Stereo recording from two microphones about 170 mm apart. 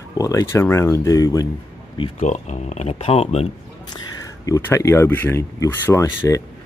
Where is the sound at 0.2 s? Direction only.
20° left (ahead or behind).